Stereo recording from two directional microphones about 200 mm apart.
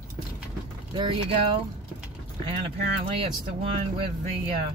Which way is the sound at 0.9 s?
25° right (ahead or behind).